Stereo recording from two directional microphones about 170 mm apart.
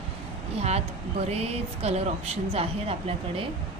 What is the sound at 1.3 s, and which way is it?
Speech, 35° right (ahead or behind).